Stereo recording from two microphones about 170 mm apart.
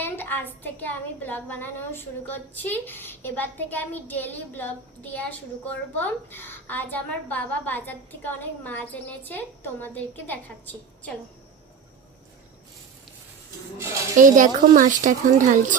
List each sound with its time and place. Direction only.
0.0 s a woman's voice: 10° left (ahead or behind)
14.2 s speech: 50° right (ahead or behind)